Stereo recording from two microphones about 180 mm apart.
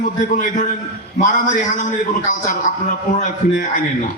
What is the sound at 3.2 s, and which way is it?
Speech, 50° left (ahead or behind).